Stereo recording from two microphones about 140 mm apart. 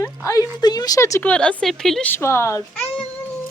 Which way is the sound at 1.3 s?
5° left (ahead or behind).